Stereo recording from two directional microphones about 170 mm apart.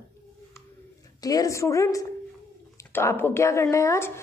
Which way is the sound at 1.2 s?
20° left (ahead or behind).